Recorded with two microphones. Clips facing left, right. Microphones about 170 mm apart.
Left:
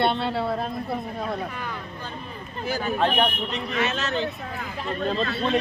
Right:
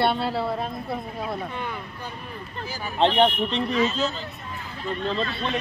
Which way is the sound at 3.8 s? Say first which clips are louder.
Left 3 dB; 75° left (ahead or behind).